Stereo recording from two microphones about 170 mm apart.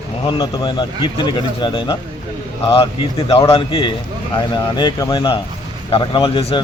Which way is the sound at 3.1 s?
35° left (ahead or behind).